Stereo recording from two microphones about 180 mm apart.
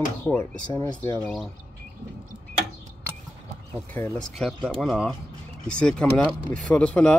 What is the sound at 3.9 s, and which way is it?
Speech, 15° left (ahead or behind).